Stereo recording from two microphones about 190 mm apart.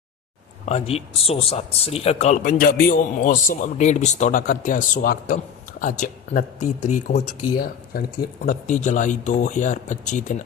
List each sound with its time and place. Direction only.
0.6 s speech: 35° left (ahead or behind)
7.5 s speech: 55° left (ahead or behind)